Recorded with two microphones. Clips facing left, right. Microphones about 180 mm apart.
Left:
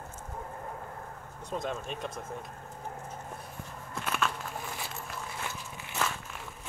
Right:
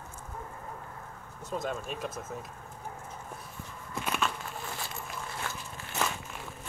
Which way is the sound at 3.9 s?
Centre (ahead or behind).